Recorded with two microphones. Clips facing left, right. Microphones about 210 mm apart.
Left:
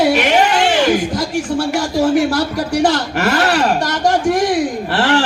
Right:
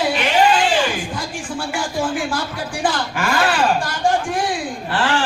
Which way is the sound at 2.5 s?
75° left (ahead or behind).